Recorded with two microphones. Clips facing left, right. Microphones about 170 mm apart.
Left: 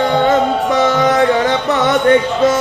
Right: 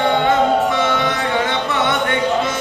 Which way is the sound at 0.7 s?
40° left (ahead or behind).